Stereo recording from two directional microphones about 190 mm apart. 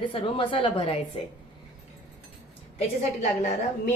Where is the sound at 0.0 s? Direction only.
25° left (ahead or behind).